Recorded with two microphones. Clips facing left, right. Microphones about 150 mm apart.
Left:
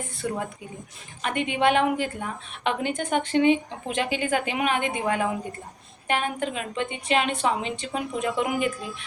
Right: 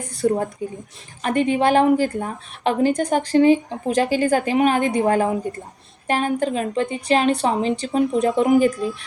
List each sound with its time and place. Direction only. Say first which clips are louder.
0.1 s a woman's voice: right 12 dB; 35° right (ahead or behind)